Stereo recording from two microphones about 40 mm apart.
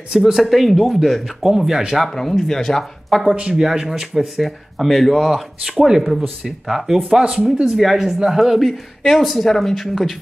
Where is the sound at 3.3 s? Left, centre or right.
Right.